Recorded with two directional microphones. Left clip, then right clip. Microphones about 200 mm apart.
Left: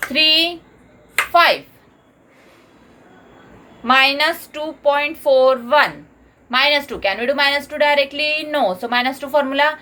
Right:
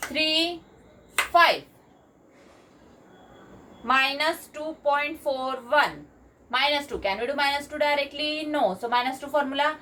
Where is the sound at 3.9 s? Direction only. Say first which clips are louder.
Left 9 dB; 40° left (ahead or behind).